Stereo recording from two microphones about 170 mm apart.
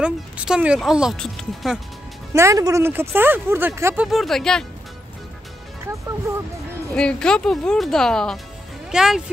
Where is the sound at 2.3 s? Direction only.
20° right (ahead or behind).